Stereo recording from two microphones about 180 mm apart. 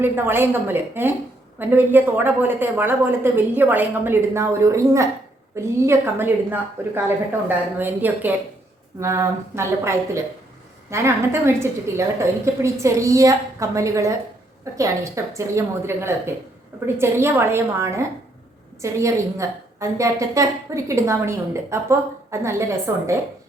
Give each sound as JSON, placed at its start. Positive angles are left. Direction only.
{"t": 0.0, "sound": "a woman's voice", "side_deg": -10}